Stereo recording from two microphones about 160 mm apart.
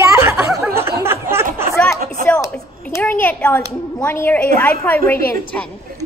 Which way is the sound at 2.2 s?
60° right (ahead or behind).